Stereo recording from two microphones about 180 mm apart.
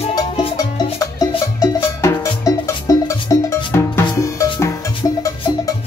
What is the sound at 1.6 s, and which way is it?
Music, 15° left (ahead or behind).